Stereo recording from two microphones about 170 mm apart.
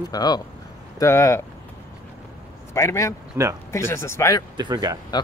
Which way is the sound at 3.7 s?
15° left (ahead or behind).